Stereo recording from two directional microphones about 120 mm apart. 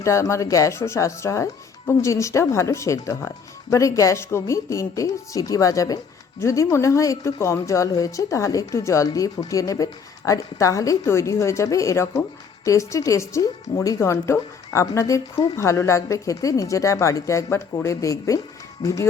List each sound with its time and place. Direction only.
0.0 s a woman's voice: 25° left (ahead or behind)